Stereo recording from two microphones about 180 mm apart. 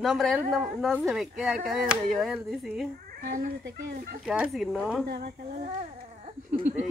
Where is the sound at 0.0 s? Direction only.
Centre (ahead or behind).